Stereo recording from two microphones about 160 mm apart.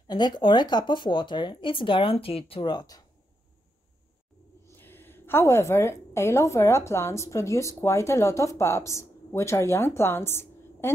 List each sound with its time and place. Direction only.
0.1 s speech: 30° left (ahead or behind)
4.6 s a woman's voice: 15° left (ahead or behind)